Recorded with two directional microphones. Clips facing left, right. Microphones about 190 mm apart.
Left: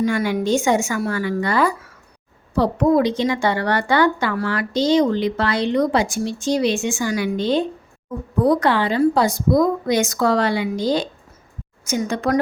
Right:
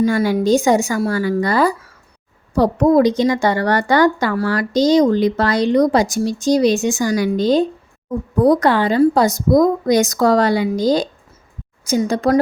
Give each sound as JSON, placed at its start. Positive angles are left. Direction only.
{"t": 0.0, "sound": "a woman's voice", "side_deg": -35}